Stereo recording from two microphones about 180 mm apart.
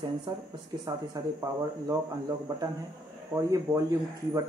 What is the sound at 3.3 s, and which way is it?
Speech, 15° right (ahead or behind).